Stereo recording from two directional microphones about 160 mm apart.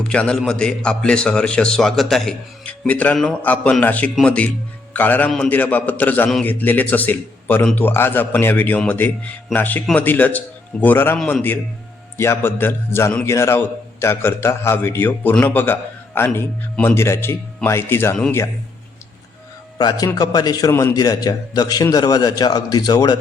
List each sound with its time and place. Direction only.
0.0 s a man's voice: 5° left (ahead or behind)
20.1 s a man's voice: 25° left (ahead or behind)